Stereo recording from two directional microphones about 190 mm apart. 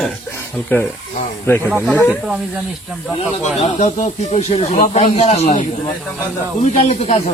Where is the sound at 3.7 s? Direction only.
40° left (ahead or behind).